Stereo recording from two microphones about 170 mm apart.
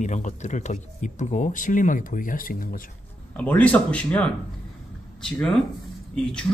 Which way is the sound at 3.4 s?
10° left (ahead or behind).